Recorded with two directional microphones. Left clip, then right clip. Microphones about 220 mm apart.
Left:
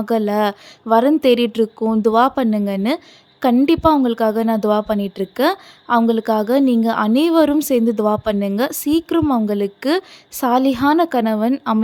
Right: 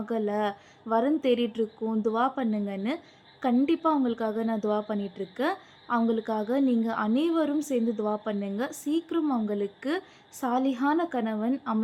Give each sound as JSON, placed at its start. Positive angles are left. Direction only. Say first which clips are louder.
{"t": 0.0, "sound": "a woman's voice", "louder": "left 11 dB", "side_deg": 45}